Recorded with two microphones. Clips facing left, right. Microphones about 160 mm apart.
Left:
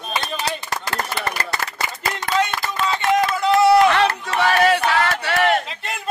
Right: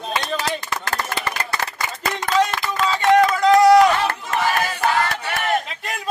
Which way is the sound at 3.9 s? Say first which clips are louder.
Left 3 dB; 75° left (ahead or behind).